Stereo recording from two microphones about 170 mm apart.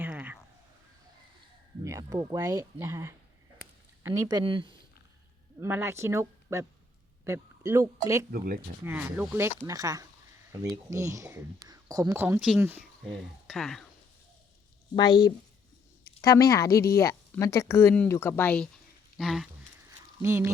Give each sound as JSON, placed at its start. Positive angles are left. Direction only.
{"t": 0.0, "sound": "a sound", "side_deg": -10}
{"t": 1.8, "sound": "speech", "side_deg": -20}
{"t": 5.5, "sound": "speech", "side_deg": -15}
{"t": 8.3, "sound": "speech", "side_deg": -60}
{"t": 8.8, "sound": "speech", "side_deg": -10}
{"t": 13.1, "sound": "speech", "side_deg": 0}
{"t": 14.9, "sound": "speech", "side_deg": 25}
{"t": 20.2, "sound": "speech", "side_deg": -15}